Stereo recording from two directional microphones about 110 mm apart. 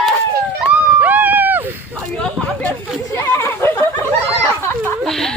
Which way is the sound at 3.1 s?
25° left (ahead or behind).